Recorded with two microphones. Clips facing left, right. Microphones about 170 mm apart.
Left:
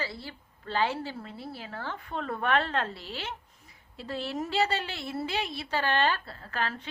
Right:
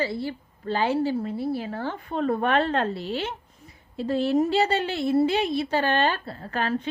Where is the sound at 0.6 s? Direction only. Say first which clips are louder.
Right 4 dB; 45° right (ahead or behind).